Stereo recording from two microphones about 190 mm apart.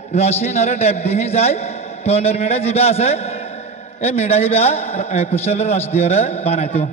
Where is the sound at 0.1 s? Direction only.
35° left (ahead or behind).